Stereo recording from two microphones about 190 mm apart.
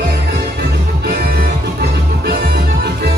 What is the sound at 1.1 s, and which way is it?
Music, 55° right (ahead or behind).